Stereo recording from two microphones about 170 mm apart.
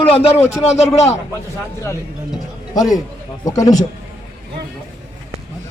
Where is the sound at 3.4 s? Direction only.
20° left (ahead or behind).